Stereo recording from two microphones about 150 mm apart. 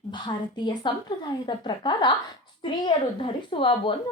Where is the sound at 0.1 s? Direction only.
30° left (ahead or behind).